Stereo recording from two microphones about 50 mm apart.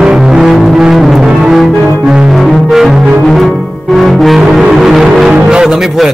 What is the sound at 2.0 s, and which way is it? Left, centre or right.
Music, centre.